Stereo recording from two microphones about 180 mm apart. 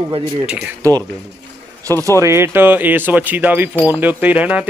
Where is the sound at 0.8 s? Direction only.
20° right (ahead or behind).